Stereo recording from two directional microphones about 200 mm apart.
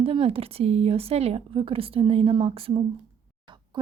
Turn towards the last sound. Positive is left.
turn(degrees=-20)  # may be behind; listen again after turning